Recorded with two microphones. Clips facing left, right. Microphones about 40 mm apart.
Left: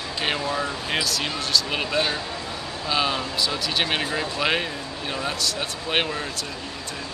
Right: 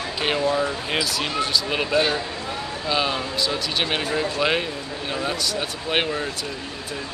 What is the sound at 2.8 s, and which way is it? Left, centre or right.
Speech, centre.